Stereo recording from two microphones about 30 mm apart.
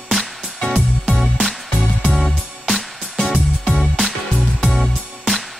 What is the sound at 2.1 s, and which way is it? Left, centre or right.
Music, centre.